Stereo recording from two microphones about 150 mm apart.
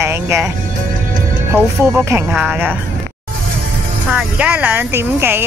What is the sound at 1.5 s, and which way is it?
Speech, 15° right (ahead or behind).